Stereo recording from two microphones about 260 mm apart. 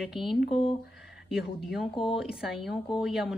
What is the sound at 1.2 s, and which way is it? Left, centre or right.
Speech, centre.